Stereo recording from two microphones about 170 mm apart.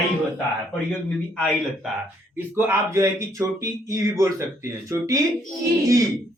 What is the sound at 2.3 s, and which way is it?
Speech, 15° right (ahead or behind).